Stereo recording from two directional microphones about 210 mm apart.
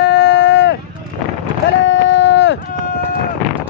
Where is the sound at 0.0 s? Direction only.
55° left (ahead or behind).